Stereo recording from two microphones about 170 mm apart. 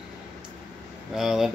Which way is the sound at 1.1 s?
5° right (ahead or behind).